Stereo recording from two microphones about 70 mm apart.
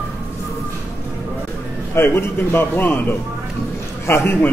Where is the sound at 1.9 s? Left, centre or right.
Left.